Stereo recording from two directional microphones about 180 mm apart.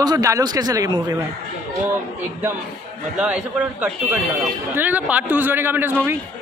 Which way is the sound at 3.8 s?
10° right (ahead or behind).